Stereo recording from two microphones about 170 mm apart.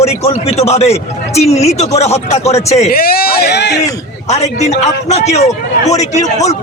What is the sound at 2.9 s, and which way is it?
Speech, 60° left (ahead or behind).